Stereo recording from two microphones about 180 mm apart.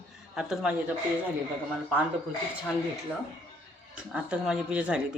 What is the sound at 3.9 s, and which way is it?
Speech, 5° right (ahead or behind).